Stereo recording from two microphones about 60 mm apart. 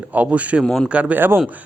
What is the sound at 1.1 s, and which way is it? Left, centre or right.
Speech, right.